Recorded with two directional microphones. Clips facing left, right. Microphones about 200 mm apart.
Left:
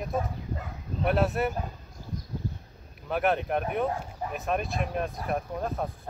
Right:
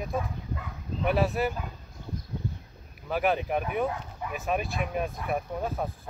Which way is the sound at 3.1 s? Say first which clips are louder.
Even; centre (ahead or behind).